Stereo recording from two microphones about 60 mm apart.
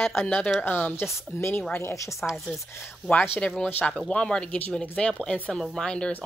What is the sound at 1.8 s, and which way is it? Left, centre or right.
Speech, left.